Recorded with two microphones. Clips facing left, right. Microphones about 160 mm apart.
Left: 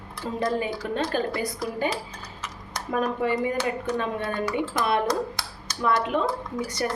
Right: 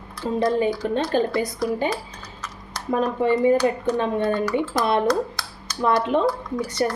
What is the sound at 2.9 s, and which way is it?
A woman's voice, 25° right (ahead or behind).